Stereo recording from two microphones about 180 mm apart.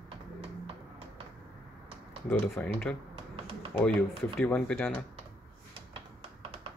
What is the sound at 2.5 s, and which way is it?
Speech, 5° left (ahead or behind).